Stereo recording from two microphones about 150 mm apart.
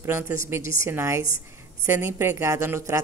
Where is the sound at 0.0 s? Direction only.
15° right (ahead or behind).